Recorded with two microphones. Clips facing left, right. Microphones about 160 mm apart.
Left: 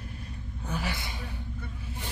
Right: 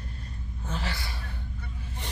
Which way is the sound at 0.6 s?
15° left (ahead or behind).